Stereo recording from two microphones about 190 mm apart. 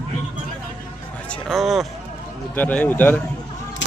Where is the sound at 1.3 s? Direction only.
Centre (ahead or behind).